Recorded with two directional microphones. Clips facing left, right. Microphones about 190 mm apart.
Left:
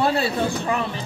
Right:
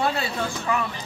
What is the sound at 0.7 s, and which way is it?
Speech, 30° left (ahead or behind).